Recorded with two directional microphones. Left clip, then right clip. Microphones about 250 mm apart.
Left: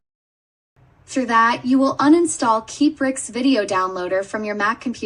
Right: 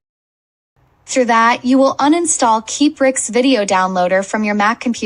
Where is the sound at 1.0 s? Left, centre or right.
Right.